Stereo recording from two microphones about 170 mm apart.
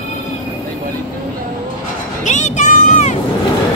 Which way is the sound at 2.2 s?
45° left (ahead or behind).